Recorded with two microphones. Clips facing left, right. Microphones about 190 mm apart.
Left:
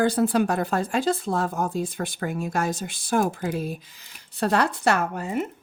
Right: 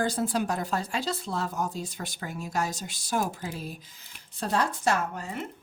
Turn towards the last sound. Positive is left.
turn(degrees=60)  # may be behind; listen again after turning